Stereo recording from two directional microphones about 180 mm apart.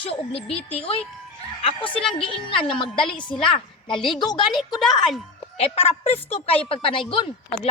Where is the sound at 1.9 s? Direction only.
5° left (ahead or behind).